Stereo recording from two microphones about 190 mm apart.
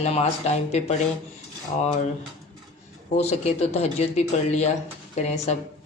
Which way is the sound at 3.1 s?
35° left (ahead or behind).